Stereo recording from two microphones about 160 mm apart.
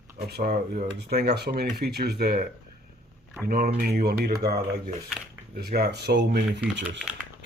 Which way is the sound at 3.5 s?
65° right (ahead or behind).